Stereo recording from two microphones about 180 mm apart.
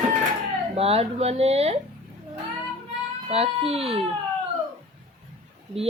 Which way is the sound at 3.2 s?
35° right (ahead or behind).